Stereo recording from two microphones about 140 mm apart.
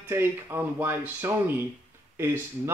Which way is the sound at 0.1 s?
15° right (ahead or behind).